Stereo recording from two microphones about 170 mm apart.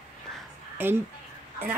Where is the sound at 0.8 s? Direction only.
10° right (ahead or behind).